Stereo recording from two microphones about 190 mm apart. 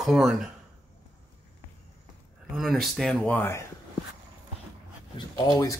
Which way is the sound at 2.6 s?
Centre (ahead or behind).